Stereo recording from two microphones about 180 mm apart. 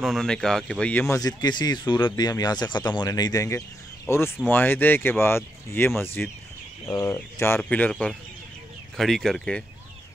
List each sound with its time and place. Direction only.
0.0 s speech: centre (ahead or behind)